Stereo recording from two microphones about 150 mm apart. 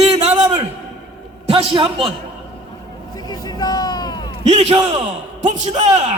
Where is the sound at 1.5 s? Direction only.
40° right (ahead or behind).